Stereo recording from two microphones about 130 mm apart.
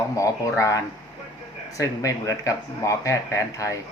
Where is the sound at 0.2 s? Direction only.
25° left (ahead or behind).